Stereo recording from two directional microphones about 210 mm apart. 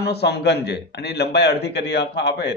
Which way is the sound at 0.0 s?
50° left (ahead or behind).